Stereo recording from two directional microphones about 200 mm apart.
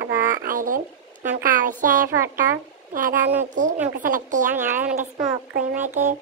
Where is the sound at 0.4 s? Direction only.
45° right (ahead or behind).